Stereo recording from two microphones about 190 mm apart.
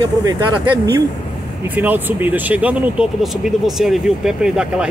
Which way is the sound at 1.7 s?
10° right (ahead or behind).